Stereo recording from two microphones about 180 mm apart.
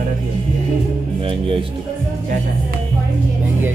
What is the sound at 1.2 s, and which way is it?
Speech, 30° right (ahead or behind).